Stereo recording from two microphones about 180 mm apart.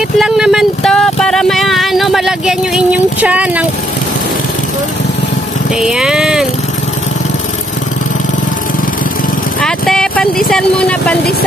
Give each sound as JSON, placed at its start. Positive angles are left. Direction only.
{"t": 0.2, "sound": "speech", "side_deg": 0}
{"t": 5.8, "sound": "speech", "side_deg": -5}
{"t": 9.6, "sound": "speech", "side_deg": 5}